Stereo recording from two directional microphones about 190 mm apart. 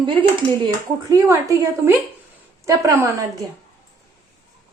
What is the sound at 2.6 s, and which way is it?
Speech, 15° right (ahead or behind).